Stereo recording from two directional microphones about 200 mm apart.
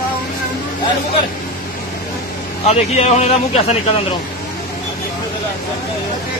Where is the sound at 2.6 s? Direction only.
35° left (ahead or behind).